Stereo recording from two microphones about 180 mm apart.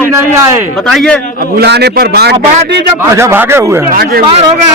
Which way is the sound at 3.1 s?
15° right (ahead or behind).